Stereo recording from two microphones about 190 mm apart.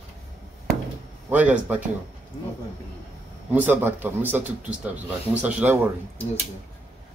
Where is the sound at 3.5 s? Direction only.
10° right (ahead or behind).